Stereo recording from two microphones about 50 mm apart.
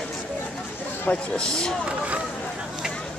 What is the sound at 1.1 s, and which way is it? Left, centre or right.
Speech, centre.